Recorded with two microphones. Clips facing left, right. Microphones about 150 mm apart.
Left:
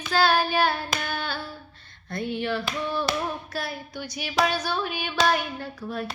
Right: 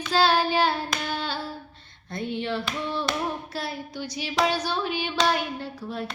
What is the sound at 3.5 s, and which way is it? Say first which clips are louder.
Hands: even; 25° right (ahead or behind).